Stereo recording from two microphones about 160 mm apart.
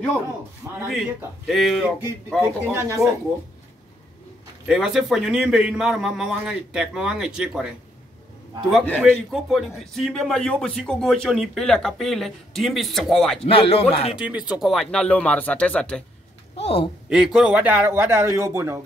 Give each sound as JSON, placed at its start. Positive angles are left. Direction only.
{"t": 0.7, "sound": "a man's voice", "side_deg": -5}
{"t": 2.2, "sound": "a man's voice", "side_deg": -10}
{"t": 4.6, "sound": "a man's voice", "side_deg": -5}
{"t": 9.0, "sound": "a man's voice", "side_deg": -5}
{"t": 13.5, "sound": "speech", "side_deg": 35}
{"t": 14.5, "sound": "speech", "side_deg": 0}
{"t": 16.5, "sound": "speech", "side_deg": 35}
{"t": 17.1, "sound": "a man's voice", "side_deg": -5}